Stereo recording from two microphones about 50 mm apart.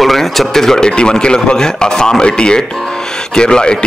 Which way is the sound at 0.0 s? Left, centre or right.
Centre.